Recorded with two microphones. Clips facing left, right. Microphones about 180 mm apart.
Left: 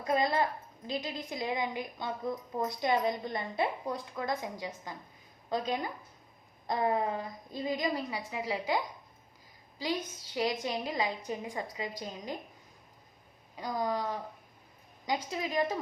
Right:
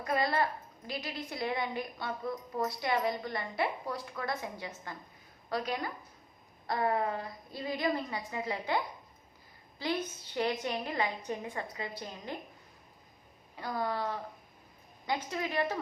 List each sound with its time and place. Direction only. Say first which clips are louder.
0.1 s a woman's voice: left 2 dB; 20° left (ahead or behind)
13.6 s a woman's voice: left 1 dB; 15° left (ahead or behind)